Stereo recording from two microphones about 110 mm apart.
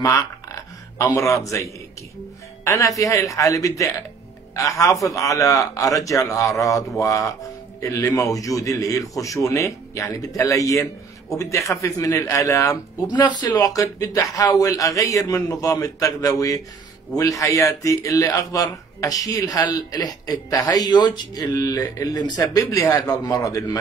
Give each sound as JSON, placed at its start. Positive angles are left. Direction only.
{"t": 0.0, "sound": "a sound", "side_deg": 30}
{"t": 1.1, "sound": "a woman's voice", "side_deg": 30}
{"t": 22.4, "sound": "a man's voice", "side_deg": 30}